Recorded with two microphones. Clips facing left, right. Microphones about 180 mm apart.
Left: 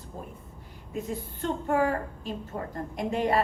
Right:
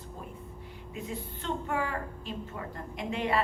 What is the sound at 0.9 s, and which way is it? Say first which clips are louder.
A woman's voice: left 5 dB; 45° left (ahead or behind).